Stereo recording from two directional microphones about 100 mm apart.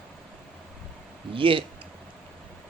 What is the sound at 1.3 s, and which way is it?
Speech, 60° right (ahead or behind).